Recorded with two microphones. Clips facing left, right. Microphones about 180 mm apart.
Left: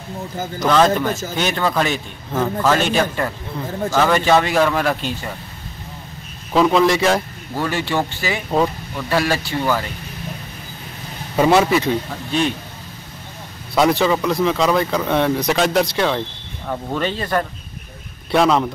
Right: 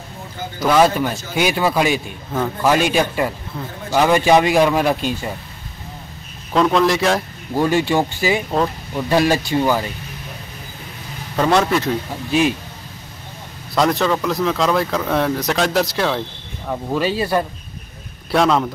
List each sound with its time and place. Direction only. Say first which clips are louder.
0.6 s a man's voice: right 1 dB; 10° right (ahead or behind)
6.5 s speech: left 1 dB; centre (ahead or behind)
7.5 s a man's voice: right 4 dB; 15° right (ahead or behind)
8.5 s speech: left 1 dB; 5° left (ahead or behind)
8.9 s a man's voice: right 6 dB; 20° right (ahead or behind)
11.3 s speech: left 2 dB; 5° left (ahead or behind)
13.7 s speech: left 1 dB; 5° left (ahead or behind)
18.3 s speech: left 1 dB; centre (ahead or behind)